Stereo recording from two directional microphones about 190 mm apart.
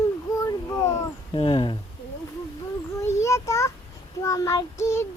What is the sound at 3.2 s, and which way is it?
Child singing, 15° left (ahead or behind).